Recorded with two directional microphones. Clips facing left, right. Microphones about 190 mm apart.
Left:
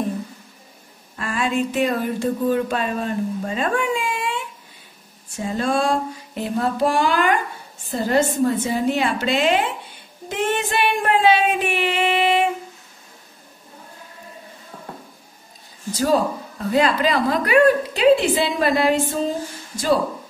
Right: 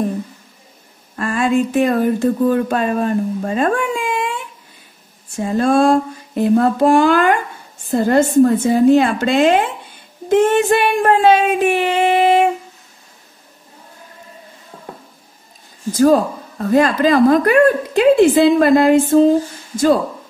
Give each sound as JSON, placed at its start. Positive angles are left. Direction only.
{"t": 1.1, "sound": "a woman's voice", "side_deg": -45}
{"t": 5.4, "sound": "a woman's voice", "side_deg": -50}
{"t": 15.9, "sound": "a woman's voice", "side_deg": -50}